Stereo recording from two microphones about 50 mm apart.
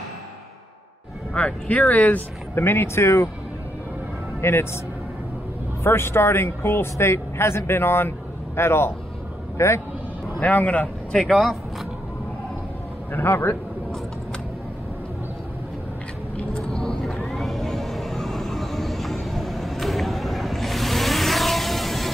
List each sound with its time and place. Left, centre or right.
1.3 s speech: left
2.5 s speech: left
4.4 s speech: left
5.9 s speech: left
9.6 s a man's voice: left
10.4 s speech: left
11.2 s speech: centre
13.1 s speech: left
16.5 s vehicle: centre